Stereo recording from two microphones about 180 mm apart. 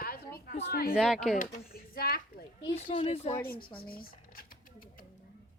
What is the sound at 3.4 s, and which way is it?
Speech, 55° left (ahead or behind).